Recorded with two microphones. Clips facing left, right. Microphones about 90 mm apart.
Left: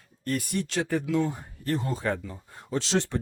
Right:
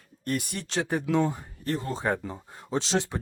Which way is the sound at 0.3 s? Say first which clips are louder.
Left 2 dB; 20° right (ahead or behind).